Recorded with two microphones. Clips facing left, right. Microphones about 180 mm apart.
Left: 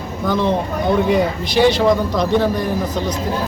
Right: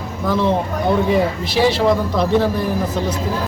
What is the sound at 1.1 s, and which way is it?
A man's voice, centre (ahead or behind).